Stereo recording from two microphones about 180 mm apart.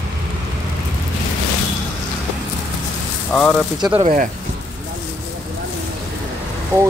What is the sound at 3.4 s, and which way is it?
Speech, 5° left (ahead or behind).